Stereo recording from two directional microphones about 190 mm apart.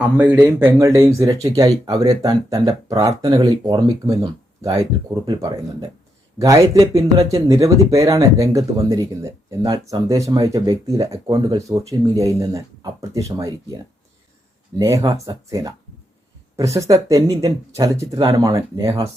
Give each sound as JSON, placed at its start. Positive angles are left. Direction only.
{"t": 0.0, "sound": "speech", "side_deg": -5}
{"t": 14.8, "sound": "speech", "side_deg": -15}
{"t": 16.7, "sound": "speech", "side_deg": -15}